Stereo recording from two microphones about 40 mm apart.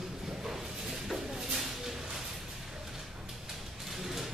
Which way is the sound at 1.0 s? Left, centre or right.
Centre.